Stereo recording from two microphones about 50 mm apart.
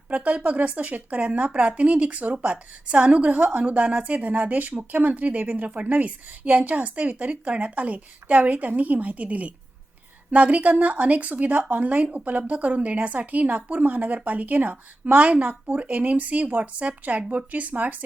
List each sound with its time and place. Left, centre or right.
0.1 s a woman's voice: right